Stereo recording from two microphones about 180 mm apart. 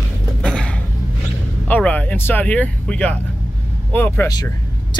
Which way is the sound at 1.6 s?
10° left (ahead or behind).